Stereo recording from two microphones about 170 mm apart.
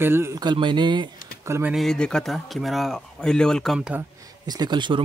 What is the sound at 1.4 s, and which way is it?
Speech, 15° right (ahead or behind).